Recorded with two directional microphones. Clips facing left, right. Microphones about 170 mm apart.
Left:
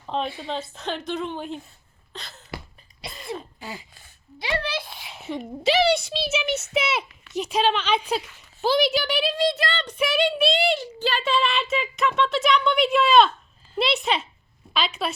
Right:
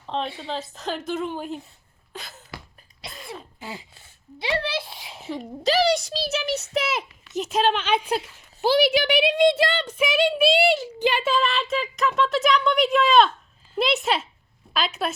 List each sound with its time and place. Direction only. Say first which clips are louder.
0.0 s a woman's voice: left 1 dB; centre (ahead or behind)
2.1 s a sound: right 2 dB; 5° right (ahead or behind)
3.0 s cough: left 4 dB; centre (ahead or behind)
3.6 s a sound: even; 25° right (ahead or behind)
5.2 s speech: left 1 dB; centre (ahead or behind)
6.4 s a child's voice: even; 35° right (ahead or behind)
7.3 s speech: even; centre (ahead or behind); by 9.7 s 20° right (ahead or behind)
9.7 s speech: right 1 dB; 5° right (ahead or behind)
11.3 s a woman's voice: even; centre (ahead or behind)